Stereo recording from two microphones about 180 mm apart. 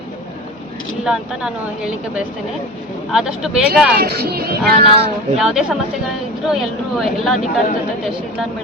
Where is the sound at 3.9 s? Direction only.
60° right (ahead or behind).